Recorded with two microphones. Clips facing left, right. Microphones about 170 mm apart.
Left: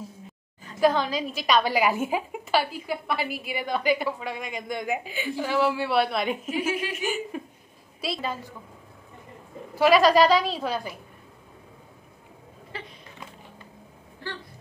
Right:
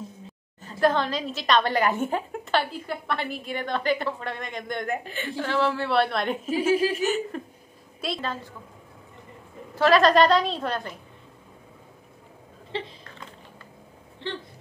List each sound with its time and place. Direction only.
0.7 s a woman's voice: 5° left (ahead or behind)
6.5 s a woman's voice: 35° right (ahead or behind)
7.0 s a woman's voice: 10° left (ahead or behind)
9.8 s a woman's voice: 10° left (ahead or behind)
12.7 s a sound: 25° right (ahead or behind)